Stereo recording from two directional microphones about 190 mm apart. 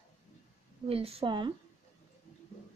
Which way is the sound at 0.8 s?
30° right (ahead or behind).